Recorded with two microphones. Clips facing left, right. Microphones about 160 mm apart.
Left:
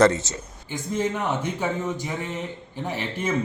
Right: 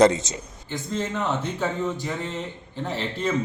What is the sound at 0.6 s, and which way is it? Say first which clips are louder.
Speech: left 3 dB; 10° left (ahead or behind).